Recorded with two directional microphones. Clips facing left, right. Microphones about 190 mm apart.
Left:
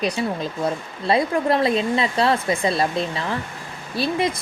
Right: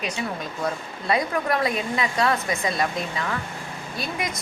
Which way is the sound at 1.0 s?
30° left (ahead or behind).